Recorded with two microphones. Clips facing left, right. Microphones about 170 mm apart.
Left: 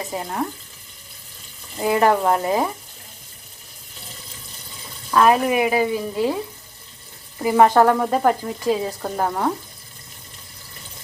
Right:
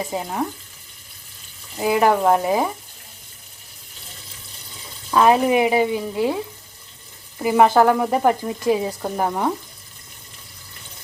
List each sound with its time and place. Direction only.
0.0 s frying: 10° right (ahead or behind)
1.8 s frying: 5° right (ahead or behind)
5.1 s speech: 20° right (ahead or behind)
7.4 s frying: 5° right (ahead or behind)